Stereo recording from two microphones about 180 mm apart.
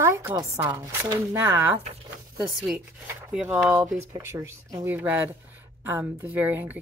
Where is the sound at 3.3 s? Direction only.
5° right (ahead or behind).